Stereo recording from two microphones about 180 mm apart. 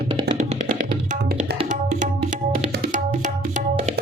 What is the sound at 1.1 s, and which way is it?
Tabla, 45° right (ahead or behind).